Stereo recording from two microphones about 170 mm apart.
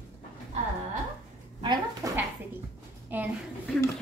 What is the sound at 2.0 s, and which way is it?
A woman's voice, 20° right (ahead or behind).